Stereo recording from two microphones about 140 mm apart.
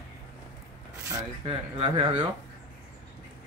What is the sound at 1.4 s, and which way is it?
Speech, 40° right (ahead or behind).